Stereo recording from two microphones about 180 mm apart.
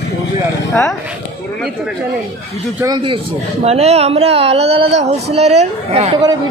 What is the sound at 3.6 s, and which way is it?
A man's voice, 35° right (ahead or behind).